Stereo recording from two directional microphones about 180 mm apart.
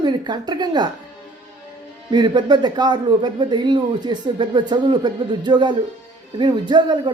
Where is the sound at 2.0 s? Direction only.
25° right (ahead or behind).